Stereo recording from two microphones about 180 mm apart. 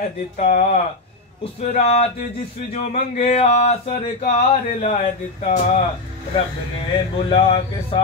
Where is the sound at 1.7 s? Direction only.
40° left (ahead or behind).